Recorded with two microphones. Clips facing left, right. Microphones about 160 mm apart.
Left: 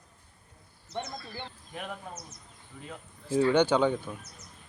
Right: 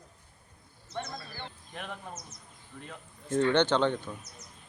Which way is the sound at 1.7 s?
5° left (ahead or behind).